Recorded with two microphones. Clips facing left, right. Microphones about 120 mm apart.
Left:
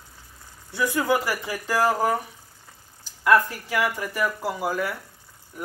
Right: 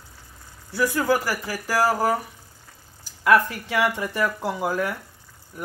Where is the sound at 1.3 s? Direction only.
5° right (ahead or behind).